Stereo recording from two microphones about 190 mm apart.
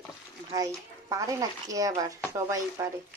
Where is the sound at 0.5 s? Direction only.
20° right (ahead or behind).